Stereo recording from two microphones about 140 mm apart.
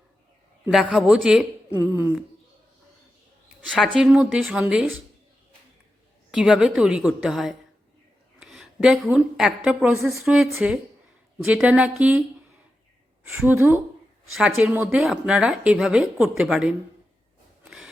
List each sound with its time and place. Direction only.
0.7 s speech: centre (ahead or behind)
1.8 s a woman's voice: 15° right (ahead or behind)
3.9 s a woman's voice: 5° right (ahead or behind)
6.3 s speech: 5° right (ahead or behind)
8.4 s a sound: centre (ahead or behind)
9.6 s a woman's voice: 5° right (ahead or behind)
13.3 s a woman's voice: 15° right (ahead or behind)
17.6 s wood: 5° right (ahead or behind)